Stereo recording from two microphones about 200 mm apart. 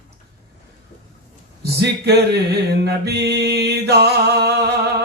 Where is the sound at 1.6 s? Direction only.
55° right (ahead or behind).